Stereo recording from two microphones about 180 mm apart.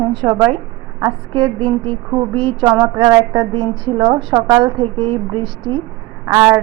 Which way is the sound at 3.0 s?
25° right (ahead or behind).